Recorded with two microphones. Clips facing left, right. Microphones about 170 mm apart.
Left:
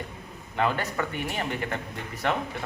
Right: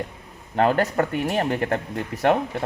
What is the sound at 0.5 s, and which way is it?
Speech, 45° right (ahead or behind).